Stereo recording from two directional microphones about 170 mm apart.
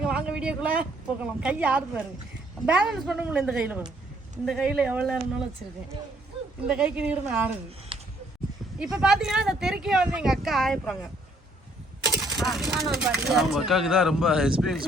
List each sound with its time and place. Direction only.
0.0 s speech: 5° right (ahead or behind)
6.7 s a woman's voice: 5° right (ahead or behind)
7.9 s a sound: 30° right (ahead or behind)
9.0 s speech: 5° right (ahead or behind)
12.0 s a sound: centre (ahead or behind)
13.0 s speech: 5° right (ahead or behind)